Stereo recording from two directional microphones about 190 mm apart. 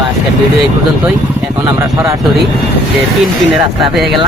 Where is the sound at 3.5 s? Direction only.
Centre (ahead or behind).